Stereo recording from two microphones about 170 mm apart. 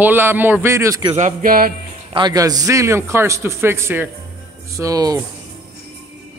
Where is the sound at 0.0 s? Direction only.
10° right (ahead or behind).